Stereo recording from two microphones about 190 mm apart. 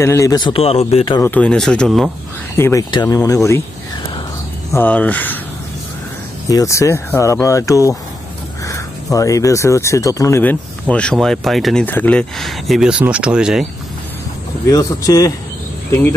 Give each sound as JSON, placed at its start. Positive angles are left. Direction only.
{"t": 0.0, "sound": "a man's voice", "side_deg": 15}
{"t": 1.2, "sound": "speech", "side_deg": 5}
{"t": 2.5, "sound": "speech", "side_deg": 15}
{"t": 4.7, "sound": "speech", "side_deg": 10}
{"t": 6.5, "sound": "speech", "side_deg": 15}
{"t": 14.7, "sound": "speech", "side_deg": 20}